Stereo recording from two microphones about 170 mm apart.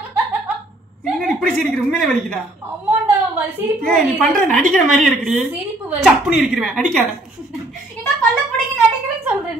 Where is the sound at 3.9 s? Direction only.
5° left (ahead or behind).